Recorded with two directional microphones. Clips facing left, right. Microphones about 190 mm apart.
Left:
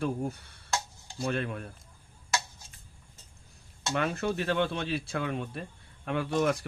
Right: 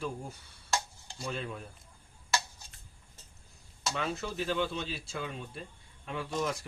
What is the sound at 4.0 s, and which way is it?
Speech, 60° left (ahead or behind).